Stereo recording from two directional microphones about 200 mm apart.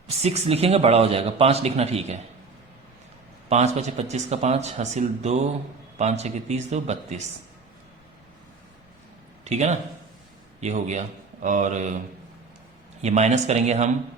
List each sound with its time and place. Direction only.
0.2 s speech: 30° right (ahead or behind)
3.5 s speech: 35° right (ahead or behind)
9.4 s speech: 35° right (ahead or behind)
13.0 s speech: 35° right (ahead or behind)